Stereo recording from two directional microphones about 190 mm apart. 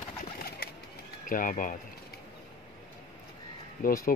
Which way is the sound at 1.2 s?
45° left (ahead or behind).